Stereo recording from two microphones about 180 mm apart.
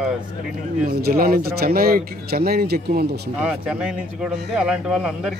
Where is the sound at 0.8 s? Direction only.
55° right (ahead or behind).